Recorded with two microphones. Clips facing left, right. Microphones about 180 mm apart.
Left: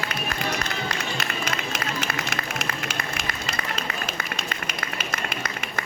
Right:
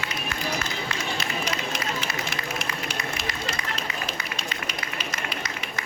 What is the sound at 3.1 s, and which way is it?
Run, 55° left (ahead or behind).